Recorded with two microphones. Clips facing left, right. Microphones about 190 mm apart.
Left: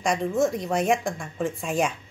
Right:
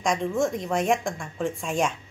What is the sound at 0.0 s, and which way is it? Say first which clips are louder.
Speech: left 1 dB; 5° left (ahead or behind).